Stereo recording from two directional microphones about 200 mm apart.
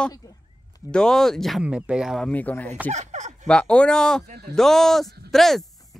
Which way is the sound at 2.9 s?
35° right (ahead or behind).